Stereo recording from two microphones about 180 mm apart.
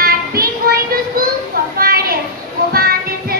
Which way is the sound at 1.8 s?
55° right (ahead or behind).